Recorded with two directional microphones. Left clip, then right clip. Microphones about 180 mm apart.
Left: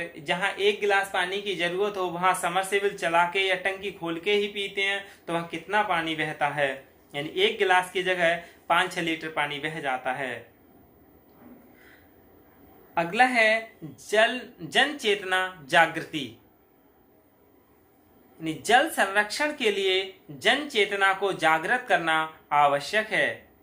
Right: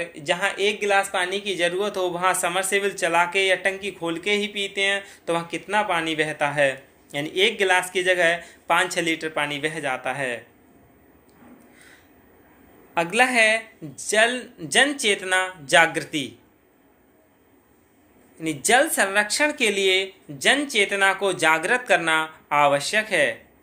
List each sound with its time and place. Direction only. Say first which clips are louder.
0.0 s speech: right 4 dB; 35° right (ahead or behind)
12.9 s speech: right 2 dB; 35° right (ahead or behind)
18.3 s speech: right 3 dB; 35° right (ahead or behind)